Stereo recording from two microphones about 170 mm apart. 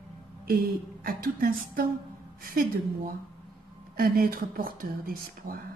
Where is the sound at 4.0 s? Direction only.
60° right (ahead or behind).